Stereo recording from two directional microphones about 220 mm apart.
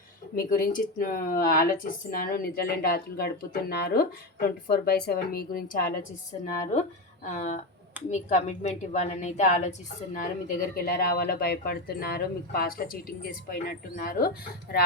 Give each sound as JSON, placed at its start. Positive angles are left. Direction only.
{"t": 0.3, "sound": "a woman's voice", "side_deg": 40}
{"t": 10.8, "sound": "speech", "side_deg": 45}